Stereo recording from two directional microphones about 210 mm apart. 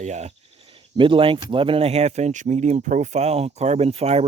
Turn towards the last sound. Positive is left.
turn(degrees=-30)  # may be behind; listen again after turning